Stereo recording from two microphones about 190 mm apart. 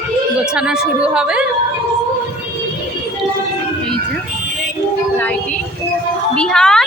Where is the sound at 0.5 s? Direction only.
5° right (ahead or behind).